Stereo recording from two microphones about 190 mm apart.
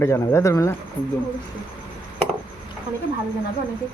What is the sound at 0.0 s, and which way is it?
Speech, 15° left (ahead or behind).